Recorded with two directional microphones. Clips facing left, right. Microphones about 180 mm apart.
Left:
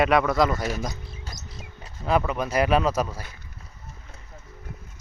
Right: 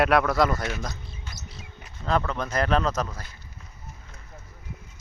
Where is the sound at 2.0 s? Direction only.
10° left (ahead or behind).